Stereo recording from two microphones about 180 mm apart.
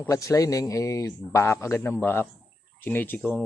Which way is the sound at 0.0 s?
15° left (ahead or behind).